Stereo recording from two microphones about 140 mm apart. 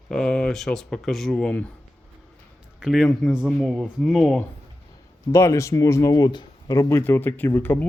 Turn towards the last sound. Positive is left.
turn(degrees=15)  # may be behind; listen again after turning